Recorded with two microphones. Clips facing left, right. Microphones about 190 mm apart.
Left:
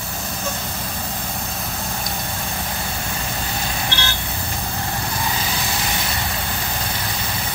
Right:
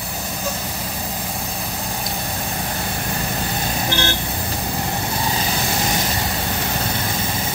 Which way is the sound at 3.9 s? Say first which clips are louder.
Right 5 dB; 45° right (ahead or behind).